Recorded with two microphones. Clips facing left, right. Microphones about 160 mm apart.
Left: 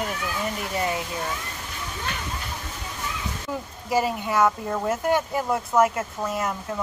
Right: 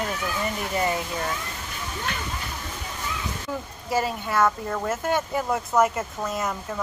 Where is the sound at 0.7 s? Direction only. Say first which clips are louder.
Right 2 dB; centre (ahead or behind).